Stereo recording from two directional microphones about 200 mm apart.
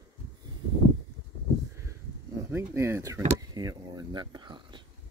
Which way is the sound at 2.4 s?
15° right (ahead or behind).